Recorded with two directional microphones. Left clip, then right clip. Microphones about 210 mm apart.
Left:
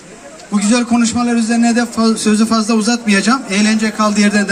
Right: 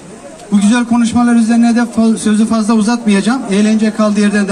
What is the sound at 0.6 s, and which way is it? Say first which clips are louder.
A man's voice: even; 20° left (ahead or behind).